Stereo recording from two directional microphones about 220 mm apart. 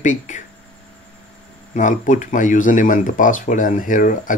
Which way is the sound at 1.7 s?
35° left (ahead or behind).